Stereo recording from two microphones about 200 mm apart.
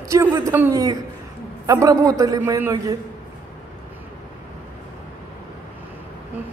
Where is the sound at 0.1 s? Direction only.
15° right (ahead or behind).